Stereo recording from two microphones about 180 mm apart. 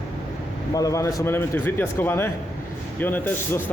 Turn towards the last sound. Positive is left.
turn(degrees=10)  # may be behind; listen again after turning